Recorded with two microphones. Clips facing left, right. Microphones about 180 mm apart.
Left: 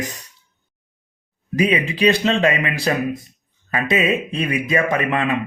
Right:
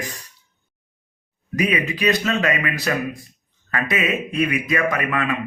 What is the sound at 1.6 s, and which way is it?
Speech, 30° left (ahead or behind).